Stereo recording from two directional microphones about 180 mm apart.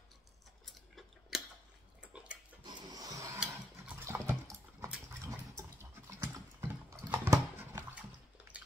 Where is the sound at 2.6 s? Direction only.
20° right (ahead or behind).